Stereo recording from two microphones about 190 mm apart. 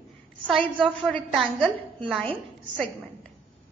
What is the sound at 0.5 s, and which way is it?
A woman's voice, centre (ahead or behind).